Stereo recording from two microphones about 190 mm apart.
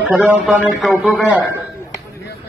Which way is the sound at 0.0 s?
10° right (ahead or behind).